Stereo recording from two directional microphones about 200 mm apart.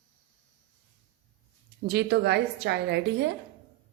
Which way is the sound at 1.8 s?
55° right (ahead or behind).